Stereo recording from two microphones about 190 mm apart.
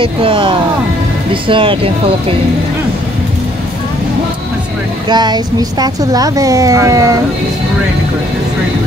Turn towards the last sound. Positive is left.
turn(degrees=-15)  # may be behind; listen again after turning